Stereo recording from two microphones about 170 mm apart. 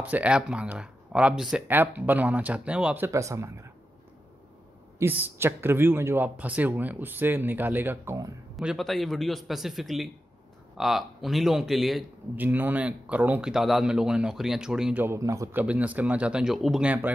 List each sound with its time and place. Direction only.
0.0 s speech: 5° right (ahead or behind)
3.1 s speech: 20° right (ahead or behind)
5.0 s speech: 15° right (ahead or behind)
8.5 s speech: centre (ahead or behind)
12.4 s speech: 10° right (ahead or behind)
15.6 s speech: 10° right (ahead or behind)